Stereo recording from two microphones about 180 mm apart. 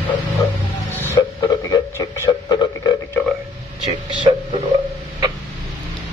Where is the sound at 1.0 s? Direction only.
20° left (ahead or behind).